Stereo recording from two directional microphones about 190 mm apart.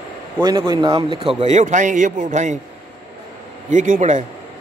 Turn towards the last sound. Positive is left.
turn(degrees=-40)  # may be behind; listen again after turning